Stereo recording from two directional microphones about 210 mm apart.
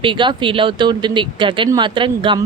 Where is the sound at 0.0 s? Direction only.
25° right (ahead or behind).